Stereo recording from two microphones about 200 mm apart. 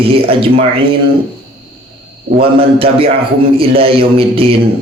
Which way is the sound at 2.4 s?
30° right (ahead or behind).